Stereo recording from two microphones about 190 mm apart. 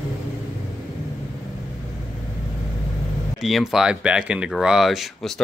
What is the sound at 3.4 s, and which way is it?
Speech, centre (ahead or behind).